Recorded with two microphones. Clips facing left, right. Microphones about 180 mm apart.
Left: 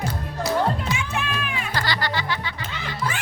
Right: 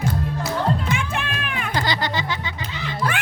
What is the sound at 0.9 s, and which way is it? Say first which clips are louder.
Music: right 1 dB; 55° right (ahead or behind).